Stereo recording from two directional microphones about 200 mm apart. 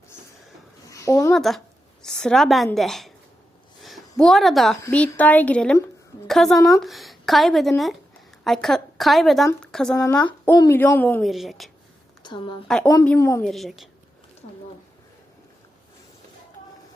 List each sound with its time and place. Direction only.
0.9 s a sound: 15° left (ahead or behind)
1.3 s a woman's voice: centre (ahead or behind)
3.8 s a sound: centre (ahead or behind)
4.2 s a woman's voice: centre (ahead or behind)
10.5 s a woman's voice: 15° left (ahead or behind)
11.2 s speech: centre (ahead or behind)
12.2 s a woman's voice: 25° left (ahead or behind)
12.6 s a woman's voice: 5° left (ahead or behind)
13.4 s speech: centre (ahead or behind)